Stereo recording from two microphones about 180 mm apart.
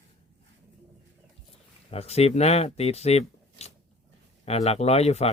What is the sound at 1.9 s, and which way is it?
Speech, 35° left (ahead or behind).